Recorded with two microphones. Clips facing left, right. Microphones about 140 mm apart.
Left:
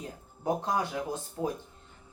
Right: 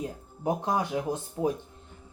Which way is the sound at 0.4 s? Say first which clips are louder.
Right 2 dB; 15° right (ahead or behind).